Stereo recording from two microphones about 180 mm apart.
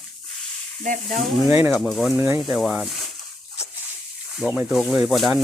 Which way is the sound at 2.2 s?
15° right (ahead or behind).